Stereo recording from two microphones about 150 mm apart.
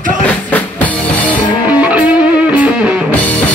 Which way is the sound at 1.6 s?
10° right (ahead or behind).